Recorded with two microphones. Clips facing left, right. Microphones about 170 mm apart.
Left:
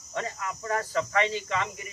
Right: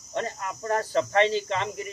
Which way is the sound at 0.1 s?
30° right (ahead or behind).